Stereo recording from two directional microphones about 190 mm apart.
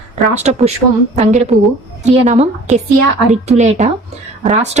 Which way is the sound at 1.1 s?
40° right (ahead or behind).